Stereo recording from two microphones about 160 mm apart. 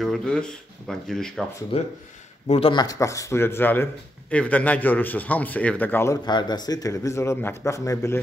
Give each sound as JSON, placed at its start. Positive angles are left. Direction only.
{"t": 0.0, "sound": "speech", "side_deg": 5}
{"t": 1.7, "sound": "speech", "side_deg": 35}
{"t": 6.2, "sound": "a man's voice", "side_deg": 25}